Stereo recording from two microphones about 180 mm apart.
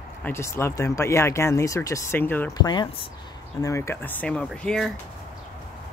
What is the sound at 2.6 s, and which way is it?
Speech, 25° left (ahead or behind).